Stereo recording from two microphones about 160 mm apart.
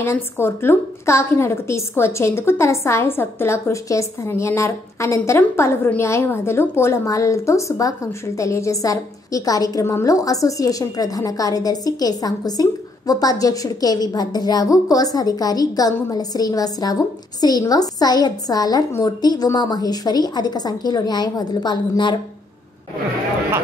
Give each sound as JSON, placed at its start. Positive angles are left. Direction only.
{"t": 0.0, "sound": "a woman's voice", "side_deg": 15}